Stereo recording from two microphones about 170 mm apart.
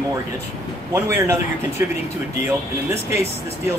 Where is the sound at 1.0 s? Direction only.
15° right (ahead or behind).